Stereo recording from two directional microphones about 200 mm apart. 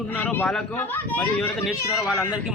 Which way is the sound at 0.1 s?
10° left (ahead or behind).